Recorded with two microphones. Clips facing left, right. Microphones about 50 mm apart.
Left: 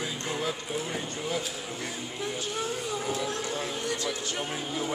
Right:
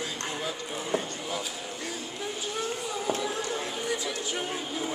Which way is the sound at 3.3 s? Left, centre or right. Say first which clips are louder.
Even; centre.